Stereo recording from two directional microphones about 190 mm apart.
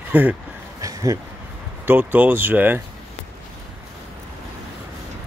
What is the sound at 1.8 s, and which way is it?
Speech, 10° right (ahead or behind).